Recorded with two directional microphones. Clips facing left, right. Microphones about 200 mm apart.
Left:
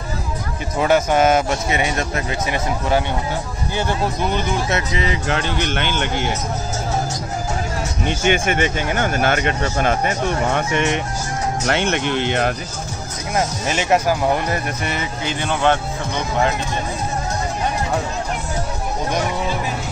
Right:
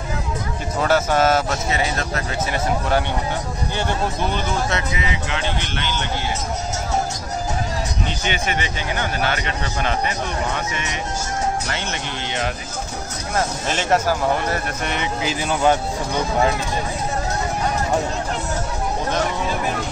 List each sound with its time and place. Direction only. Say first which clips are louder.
0.7 s speech: left 2 dB; 15° left (ahead or behind)
4.7 s speech: left 3 dB; 35° left (ahead or behind); by 6.3 s 55° left (ahead or behind)
8.3 s speech: left 8 dB; 50° left (ahead or behind)
13.7 s speech: left 2 dB; 10° left (ahead or behind)
15.4 s speech: even; 10° right (ahead or behind)